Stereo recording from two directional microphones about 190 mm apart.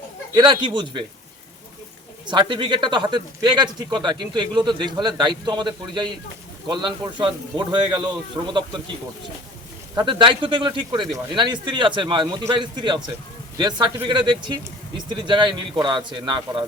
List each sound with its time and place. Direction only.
0.3 s speech: 25° right (ahead or behind)
2.2 s speech: 25° right (ahead or behind)
9.9 s speech: 25° right (ahead or behind)